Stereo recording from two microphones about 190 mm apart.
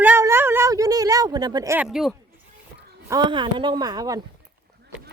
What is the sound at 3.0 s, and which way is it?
A woman's voice, 20° right (ahead or behind).